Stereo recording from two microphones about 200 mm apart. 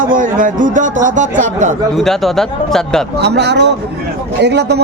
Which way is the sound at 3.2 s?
55° right (ahead or behind).